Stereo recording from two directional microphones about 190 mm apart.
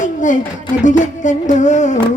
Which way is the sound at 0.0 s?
40° left (ahead or behind).